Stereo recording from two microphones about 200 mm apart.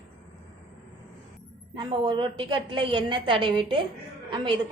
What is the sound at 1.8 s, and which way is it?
A woman's voice, 25° right (ahead or behind).